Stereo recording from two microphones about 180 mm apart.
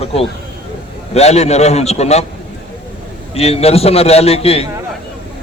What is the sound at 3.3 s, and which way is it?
A man's voice, 35° left (ahead or behind).